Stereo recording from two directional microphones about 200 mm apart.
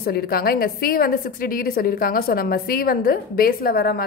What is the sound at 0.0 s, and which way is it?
A woman's voice, 50° left (ahead or behind).